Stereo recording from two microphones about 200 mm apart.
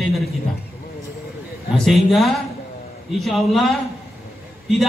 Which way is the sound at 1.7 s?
Centre (ahead or behind).